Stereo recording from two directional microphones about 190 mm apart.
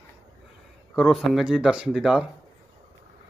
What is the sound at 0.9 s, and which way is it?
Speech, centre (ahead or behind).